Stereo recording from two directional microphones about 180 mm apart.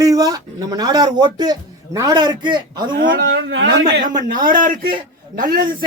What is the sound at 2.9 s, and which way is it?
Speech, 55° right (ahead or behind).